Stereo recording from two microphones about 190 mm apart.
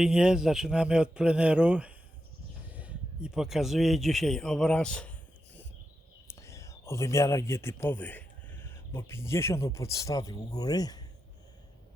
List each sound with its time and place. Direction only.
0.0 s speech: 5° right (ahead or behind)
6.2 s speech: 15° left (ahead or behind)